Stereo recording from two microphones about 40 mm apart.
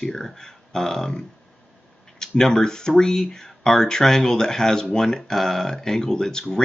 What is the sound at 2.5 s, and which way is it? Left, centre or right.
Speech, centre.